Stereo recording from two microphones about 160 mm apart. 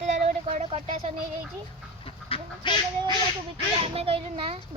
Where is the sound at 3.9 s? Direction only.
35° right (ahead or behind).